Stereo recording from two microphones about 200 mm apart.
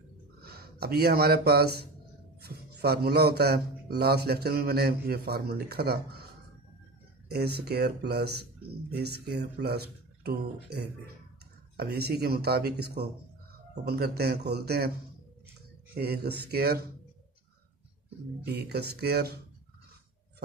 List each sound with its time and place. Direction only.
0.4 s a man's voice: 50° right (ahead or behind)
7.2 s a man's voice: 55° right (ahead or behind)
15.9 s a man's voice: 50° right (ahead or behind)
18.4 s a man's voice: 55° right (ahead or behind)